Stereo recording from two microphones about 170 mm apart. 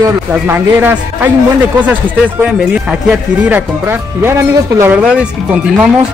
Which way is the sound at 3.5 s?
15° right (ahead or behind).